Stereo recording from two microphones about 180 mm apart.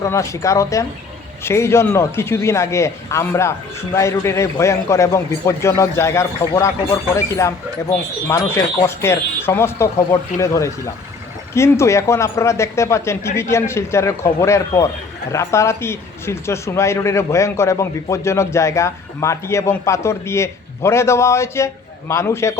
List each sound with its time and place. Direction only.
0.0 s speech: 15° left (ahead or behind)